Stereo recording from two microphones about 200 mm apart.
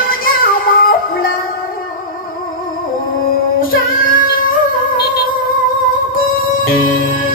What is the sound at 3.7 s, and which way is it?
Child singing, 45° left (ahead or behind).